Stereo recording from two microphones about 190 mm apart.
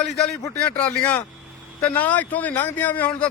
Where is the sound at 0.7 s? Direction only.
5° left (ahead or behind).